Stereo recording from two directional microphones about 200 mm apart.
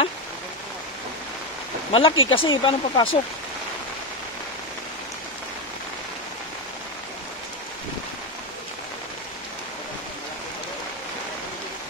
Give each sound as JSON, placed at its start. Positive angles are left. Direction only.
{"t": 1.9, "sound": "speech", "side_deg": 25}